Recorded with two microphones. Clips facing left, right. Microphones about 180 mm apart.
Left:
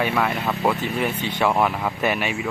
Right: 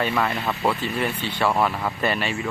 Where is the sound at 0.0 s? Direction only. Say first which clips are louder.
Left 1 dB; 10° left (ahead or behind).